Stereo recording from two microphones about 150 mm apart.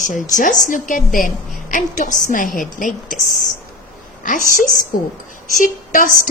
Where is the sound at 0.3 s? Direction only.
60° left (ahead or behind).